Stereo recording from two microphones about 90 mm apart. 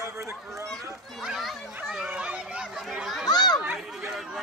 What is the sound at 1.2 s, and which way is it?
Chatter, centre (ahead or behind).